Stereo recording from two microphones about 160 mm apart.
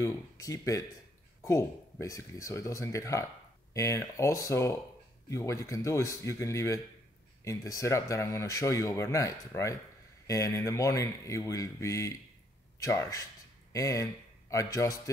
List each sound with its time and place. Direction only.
0.0 s speech: 20° left (ahead or behind)